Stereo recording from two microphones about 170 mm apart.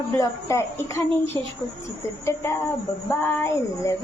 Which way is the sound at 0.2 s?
15° left (ahead or behind).